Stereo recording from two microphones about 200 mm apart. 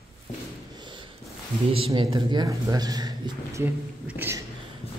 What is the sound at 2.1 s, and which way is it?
Speech, 20° right (ahead or behind).